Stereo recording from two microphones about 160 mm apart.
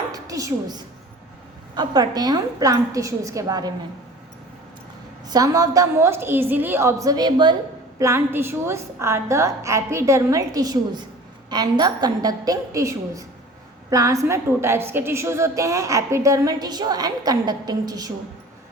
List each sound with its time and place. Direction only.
0.1 s a woman's voice: 20° right (ahead or behind)
5.3 s a woman's voice: 20° right (ahead or behind)
7.9 s a woman's voice: 15° right (ahead or behind)